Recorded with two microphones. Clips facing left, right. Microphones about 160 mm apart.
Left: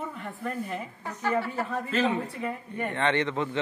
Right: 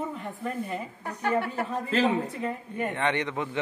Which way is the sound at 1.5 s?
20° right (ahead or behind).